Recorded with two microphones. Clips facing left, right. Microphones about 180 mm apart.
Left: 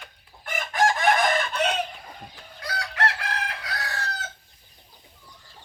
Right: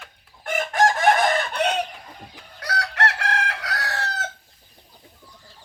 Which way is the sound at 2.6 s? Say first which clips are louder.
Right 3 dB; 75° right (ahead or behind).